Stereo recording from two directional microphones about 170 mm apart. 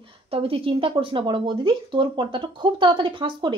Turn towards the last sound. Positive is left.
turn(degrees=-30)  # may be behind; listen again after turning